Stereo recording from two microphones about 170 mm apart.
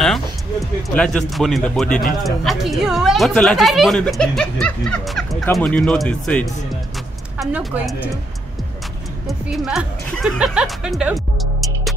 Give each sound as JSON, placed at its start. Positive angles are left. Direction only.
{"t": 0.0, "sound": "a woman's voice", "side_deg": 0}
{"t": 9.5, "sound": "speech", "side_deg": 0}